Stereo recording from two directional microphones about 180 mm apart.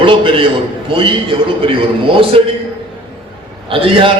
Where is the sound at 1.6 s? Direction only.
30° right (ahead or behind).